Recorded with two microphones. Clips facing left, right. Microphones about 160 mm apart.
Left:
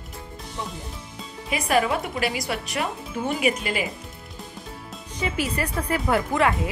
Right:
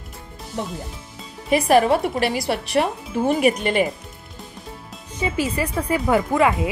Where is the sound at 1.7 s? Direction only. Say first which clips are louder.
Right 5 dB; 35° right (ahead or behind).